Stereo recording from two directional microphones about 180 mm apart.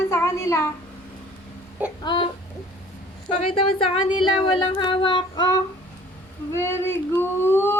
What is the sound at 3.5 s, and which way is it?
Child singing, 30° left (ahead or behind).